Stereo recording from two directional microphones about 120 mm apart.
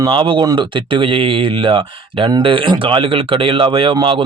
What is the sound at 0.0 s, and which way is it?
Speech, 45° right (ahead or behind).